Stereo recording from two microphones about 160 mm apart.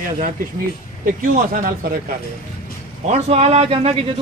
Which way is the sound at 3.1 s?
40° right (ahead or behind).